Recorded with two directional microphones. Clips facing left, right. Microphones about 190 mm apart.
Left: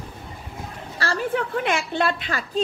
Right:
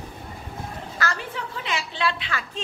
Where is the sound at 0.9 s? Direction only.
30° left (ahead or behind).